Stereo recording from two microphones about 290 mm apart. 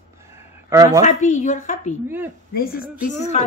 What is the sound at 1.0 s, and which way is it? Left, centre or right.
A woman's voice, left.